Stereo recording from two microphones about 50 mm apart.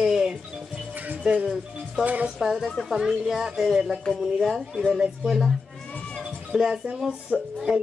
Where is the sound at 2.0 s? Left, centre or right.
Right.